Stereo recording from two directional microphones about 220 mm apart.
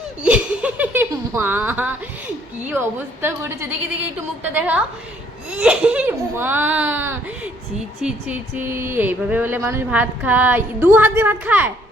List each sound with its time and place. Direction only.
0.2 s speech: 5° right (ahead or behind)